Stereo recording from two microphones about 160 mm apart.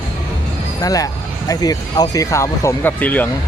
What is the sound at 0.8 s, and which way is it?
Speech, 20° left (ahead or behind).